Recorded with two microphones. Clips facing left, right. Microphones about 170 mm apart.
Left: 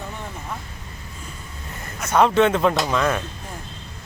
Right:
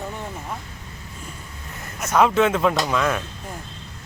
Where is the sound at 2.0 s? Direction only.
Centre (ahead or behind).